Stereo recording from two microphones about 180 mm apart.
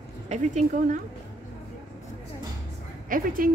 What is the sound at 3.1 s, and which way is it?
Speech, 50° right (ahead or behind).